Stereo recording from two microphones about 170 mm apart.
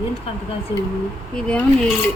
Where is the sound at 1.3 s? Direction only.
5° left (ahead or behind).